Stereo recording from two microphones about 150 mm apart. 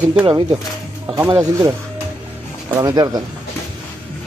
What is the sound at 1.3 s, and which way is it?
Speech, 20° right (ahead or behind).